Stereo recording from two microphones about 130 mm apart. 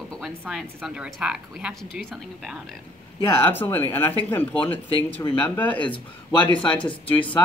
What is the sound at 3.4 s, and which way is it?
Speech, 15° left (ahead or behind).